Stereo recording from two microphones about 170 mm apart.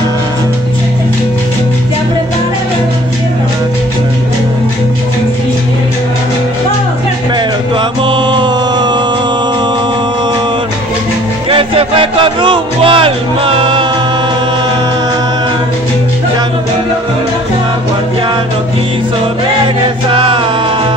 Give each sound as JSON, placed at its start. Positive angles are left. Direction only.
{"t": 8.0, "sound": "music", "side_deg": -30}
{"t": 11.5, "sound": "music", "side_deg": -30}
{"t": 20.1, "sound": "music", "side_deg": -30}